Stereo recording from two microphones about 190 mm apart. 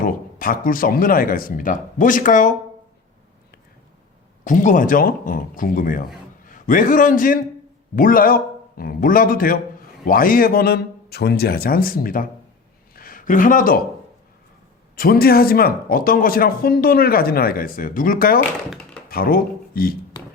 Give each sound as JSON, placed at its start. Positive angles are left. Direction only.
{"t": 0.0, "sound": "speech", "side_deg": 50}
{"t": 4.4, "sound": "a man's voice", "side_deg": 40}
{"t": 14.9, "sound": "speech", "side_deg": 50}